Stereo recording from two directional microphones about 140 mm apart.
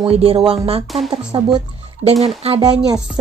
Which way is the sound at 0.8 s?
Centre (ahead or behind).